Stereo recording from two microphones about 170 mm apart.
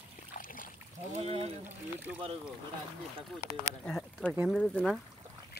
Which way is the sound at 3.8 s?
5° left (ahead or behind).